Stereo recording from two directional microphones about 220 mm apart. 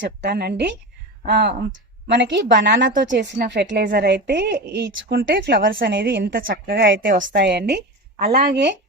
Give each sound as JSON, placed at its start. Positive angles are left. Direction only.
{"t": 0.2, "sound": "a woman's voice", "side_deg": -50}